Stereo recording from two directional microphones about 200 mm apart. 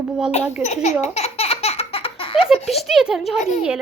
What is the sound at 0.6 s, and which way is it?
Speech, 35° left (ahead or behind).